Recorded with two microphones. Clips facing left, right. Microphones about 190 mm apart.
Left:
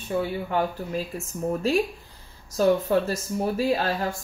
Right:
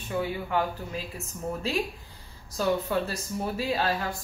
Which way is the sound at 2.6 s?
40° left (ahead or behind).